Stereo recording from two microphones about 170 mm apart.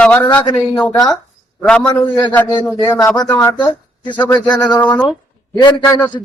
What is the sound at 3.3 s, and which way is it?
Speech, 10° left (ahead or behind).